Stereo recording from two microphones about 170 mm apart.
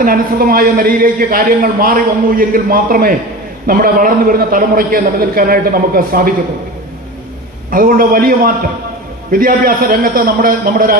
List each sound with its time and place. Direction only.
0.0 s a man's voice: 55° right (ahead or behind)
7.7 s a man's voice: 55° right (ahead or behind)